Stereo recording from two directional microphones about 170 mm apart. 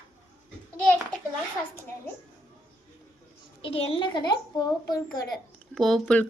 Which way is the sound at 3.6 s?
35° left (ahead or behind).